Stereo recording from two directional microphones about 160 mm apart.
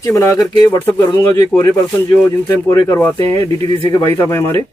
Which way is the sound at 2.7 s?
15° left (ahead or behind).